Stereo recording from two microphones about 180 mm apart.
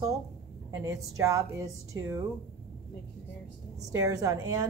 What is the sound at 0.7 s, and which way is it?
Speech, 20° right (ahead or behind).